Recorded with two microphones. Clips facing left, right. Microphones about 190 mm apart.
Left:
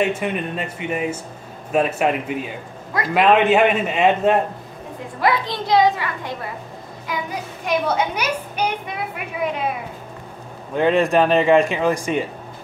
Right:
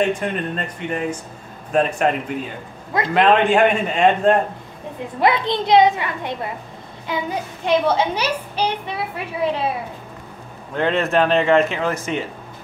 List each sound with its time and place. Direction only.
0.0 s a man's voice: 5° left (ahead or behind)
5.2 s a woman's voice: 20° right (ahead or behind)
10.7 s speech: 15° left (ahead or behind)